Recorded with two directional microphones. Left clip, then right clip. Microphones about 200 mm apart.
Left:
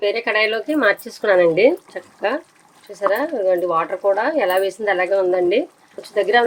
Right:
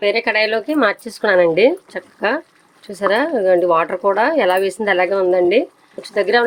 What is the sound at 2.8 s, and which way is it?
Speech, 40° right (ahead or behind).